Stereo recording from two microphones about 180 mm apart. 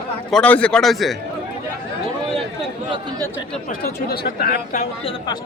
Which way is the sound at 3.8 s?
60° left (ahead or behind).